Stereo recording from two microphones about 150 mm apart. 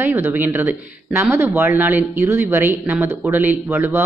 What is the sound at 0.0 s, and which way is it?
Speech, 15° right (ahead or behind).